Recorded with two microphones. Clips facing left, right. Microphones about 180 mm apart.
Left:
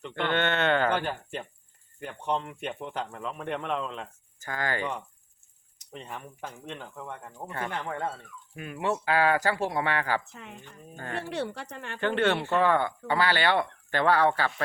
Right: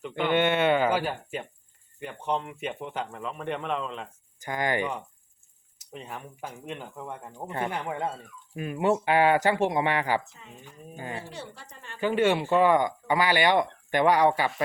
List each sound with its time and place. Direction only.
0.0 s speech: 10° right (ahead or behind)
4.4 s speech: 15° right (ahead or behind)
5.8 s speech: 5° right (ahead or behind)
8.5 s speech: 25° right (ahead or behind)
10.3 s speech: 70° left (ahead or behind)
10.6 s speech: 10° right (ahead or behind)
11.2 s speech: 70° left (ahead or behind)
11.9 s speech: 10° right (ahead or behind)